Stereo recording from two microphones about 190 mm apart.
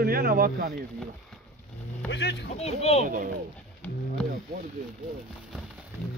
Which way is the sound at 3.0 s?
45° right (ahead or behind).